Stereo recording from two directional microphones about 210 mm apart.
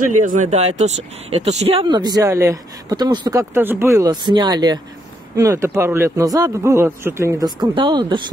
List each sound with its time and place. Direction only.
0.0 s a man's voice: 40° right (ahead or behind); by 8.2 s 20° right (ahead or behind)